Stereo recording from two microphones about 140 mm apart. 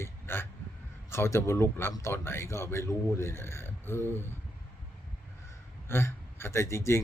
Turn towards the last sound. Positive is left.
turn(degrees=20)  # may be behind; listen again after turning